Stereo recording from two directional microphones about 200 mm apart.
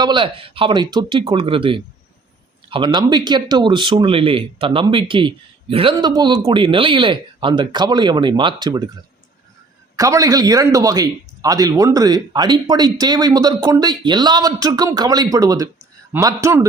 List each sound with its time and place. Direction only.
0.0 s speech: 25° right (ahead or behind)
9.9 s a man's voice: 15° right (ahead or behind)